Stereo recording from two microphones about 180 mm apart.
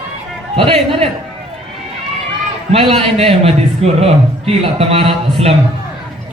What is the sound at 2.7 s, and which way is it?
Speech, 30° right (ahead or behind).